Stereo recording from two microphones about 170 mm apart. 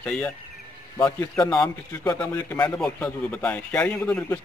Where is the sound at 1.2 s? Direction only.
20° left (ahead or behind).